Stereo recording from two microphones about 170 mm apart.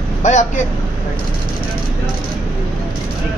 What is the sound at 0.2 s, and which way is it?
Vehicle, 45° left (ahead or behind).